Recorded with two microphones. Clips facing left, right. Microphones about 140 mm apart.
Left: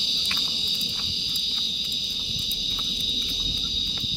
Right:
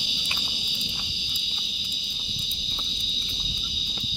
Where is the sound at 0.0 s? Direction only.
10° right (ahead or behind).